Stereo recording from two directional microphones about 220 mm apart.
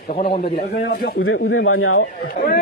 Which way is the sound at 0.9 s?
60° left (ahead or behind).